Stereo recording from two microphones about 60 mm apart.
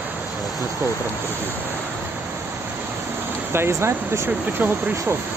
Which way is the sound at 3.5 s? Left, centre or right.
Right.